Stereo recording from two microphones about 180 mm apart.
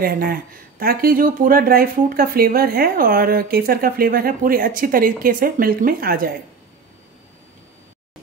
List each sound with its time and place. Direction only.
0.0 s speech: 55° right (ahead or behind)